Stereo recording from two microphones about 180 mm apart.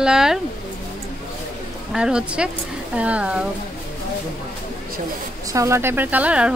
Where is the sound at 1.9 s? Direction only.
5° right (ahead or behind).